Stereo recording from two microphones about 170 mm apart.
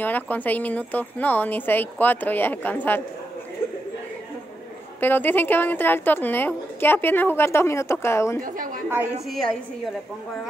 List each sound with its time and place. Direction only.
0.0 s a woman's voice: 10° left (ahead or behind)
5.0 s a woman's voice: 10° left (ahead or behind)
8.4 s a woman's voice: 55° right (ahead or behind)
9.2 s a woman's voice: centre (ahead or behind)